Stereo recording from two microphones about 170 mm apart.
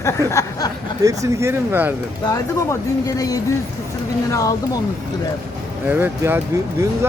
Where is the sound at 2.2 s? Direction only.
20° left (ahead or behind).